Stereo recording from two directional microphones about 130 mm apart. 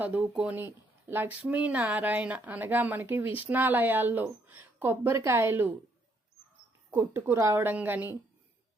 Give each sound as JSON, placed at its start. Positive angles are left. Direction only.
{"t": 0.0, "sound": "speech", "side_deg": -10}
{"t": 6.9, "sound": "speech", "side_deg": -20}